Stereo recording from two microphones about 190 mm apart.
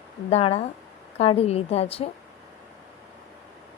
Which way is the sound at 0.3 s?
30° left (ahead or behind).